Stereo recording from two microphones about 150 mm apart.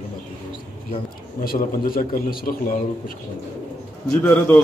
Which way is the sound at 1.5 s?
75° left (ahead or behind).